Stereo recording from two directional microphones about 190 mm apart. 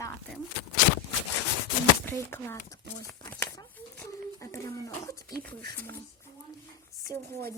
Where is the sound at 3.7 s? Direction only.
10° left (ahead or behind).